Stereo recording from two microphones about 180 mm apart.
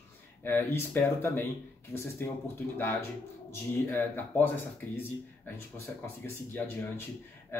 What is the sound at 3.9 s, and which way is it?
Speech, 10° left (ahead or behind).